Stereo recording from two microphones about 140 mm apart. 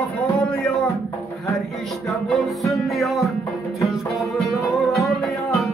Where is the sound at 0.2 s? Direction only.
5° left (ahead or behind).